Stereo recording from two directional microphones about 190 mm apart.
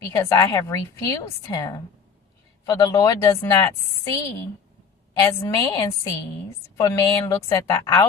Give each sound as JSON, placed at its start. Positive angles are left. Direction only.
{"t": 0.0, "sound": "a woman's voice", "side_deg": 20}
{"t": 5.1, "sound": "a woman's voice", "side_deg": 20}